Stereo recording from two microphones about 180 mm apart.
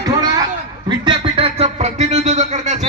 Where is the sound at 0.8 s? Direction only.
30° right (ahead or behind).